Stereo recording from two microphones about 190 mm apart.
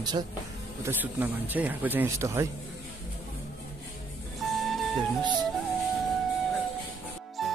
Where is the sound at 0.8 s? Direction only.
10° right (ahead or behind).